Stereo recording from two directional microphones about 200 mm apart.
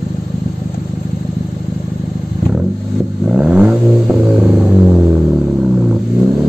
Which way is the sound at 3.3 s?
5° right (ahead or behind).